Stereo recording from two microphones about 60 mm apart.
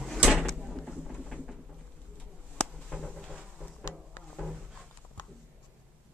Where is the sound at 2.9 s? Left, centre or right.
Centre.